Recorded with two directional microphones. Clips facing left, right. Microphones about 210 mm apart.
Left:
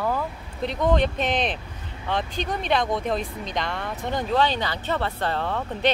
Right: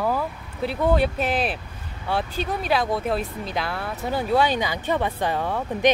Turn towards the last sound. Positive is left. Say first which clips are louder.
# right 3 dB
turn(degrees=-10)  # may be behind; listen again after turning